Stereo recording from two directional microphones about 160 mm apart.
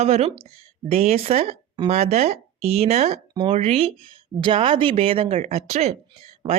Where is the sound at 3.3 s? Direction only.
35° right (ahead or behind).